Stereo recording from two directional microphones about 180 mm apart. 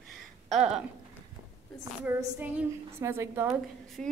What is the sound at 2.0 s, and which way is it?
A woman's voice, 10° right (ahead or behind).